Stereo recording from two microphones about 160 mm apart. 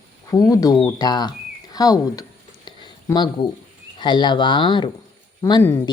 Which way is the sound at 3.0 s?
25° left (ahead or behind).